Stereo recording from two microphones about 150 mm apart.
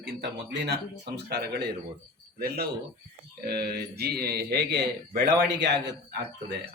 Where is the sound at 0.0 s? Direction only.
90° right.